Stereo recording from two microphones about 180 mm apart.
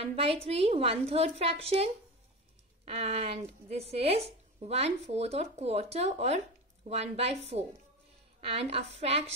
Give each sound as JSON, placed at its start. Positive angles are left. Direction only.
{"t": 0.0, "sound": "speech", "side_deg": -35}